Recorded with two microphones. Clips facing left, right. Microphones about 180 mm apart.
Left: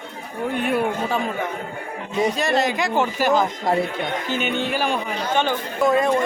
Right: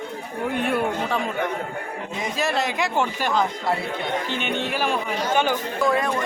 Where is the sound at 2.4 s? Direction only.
Centre (ahead or behind).